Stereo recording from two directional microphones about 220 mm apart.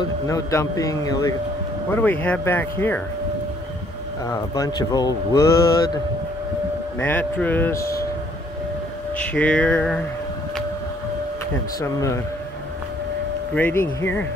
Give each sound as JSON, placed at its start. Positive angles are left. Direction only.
{"t": 0.3, "sound": "speech", "side_deg": 15}
{"t": 4.3, "sound": "speech", "side_deg": 15}
{"t": 7.0, "sound": "speech", "side_deg": 10}
{"t": 9.3, "sound": "speech", "side_deg": 5}
{"t": 11.8, "sound": "speech", "side_deg": 15}
{"t": 13.6, "sound": "speech", "side_deg": 10}